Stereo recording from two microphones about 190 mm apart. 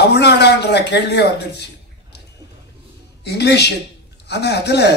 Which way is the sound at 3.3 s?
60° left (ahead or behind).